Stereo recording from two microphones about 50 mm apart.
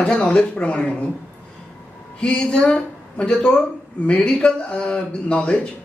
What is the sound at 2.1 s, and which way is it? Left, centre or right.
Speech, left.